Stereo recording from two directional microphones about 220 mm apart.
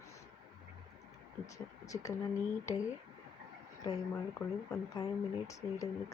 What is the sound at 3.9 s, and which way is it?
Speech, 20° left (ahead or behind).